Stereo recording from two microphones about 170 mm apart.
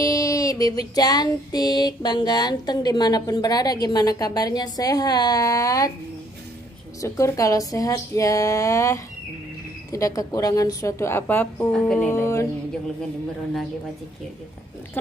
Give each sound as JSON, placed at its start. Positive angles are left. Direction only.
{"t": 0.0, "sound": "female singing", "side_deg": 20}
{"t": 7.0, "sound": "female singing", "side_deg": 20}
{"t": 9.8, "sound": "a woman's voice", "side_deg": 20}
{"t": 12.1, "sound": "a woman's voice", "side_deg": 15}